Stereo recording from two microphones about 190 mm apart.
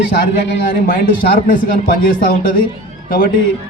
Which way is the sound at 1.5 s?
50° left (ahead or behind).